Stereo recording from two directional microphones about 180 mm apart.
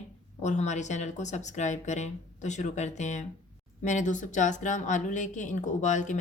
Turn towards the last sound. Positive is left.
turn(degrees=45)  # may be behind; listen again after turning